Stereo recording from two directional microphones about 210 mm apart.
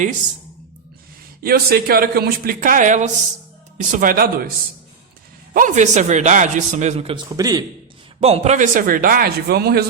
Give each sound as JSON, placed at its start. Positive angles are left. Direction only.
{"t": 1.4, "sound": "speech", "side_deg": -45}
{"t": 5.5, "sound": "a man's voice", "side_deg": -35}
{"t": 7.3, "sound": "a man's voice", "side_deg": -15}
{"t": 8.2, "sound": "a man's voice", "side_deg": -30}